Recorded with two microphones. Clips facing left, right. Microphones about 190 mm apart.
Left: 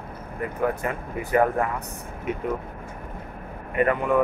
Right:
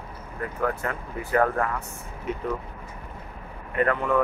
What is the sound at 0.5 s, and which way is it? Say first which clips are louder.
Speech: left 2 dB; 15° left (ahead or behind).